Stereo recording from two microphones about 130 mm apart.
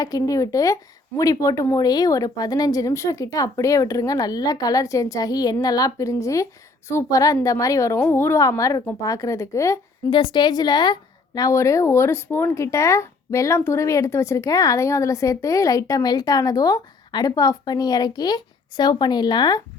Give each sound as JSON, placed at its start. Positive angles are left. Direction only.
{"t": 0.0, "sound": "speech", "side_deg": 30}
{"t": 10.1, "sound": "a woman's voice", "side_deg": 40}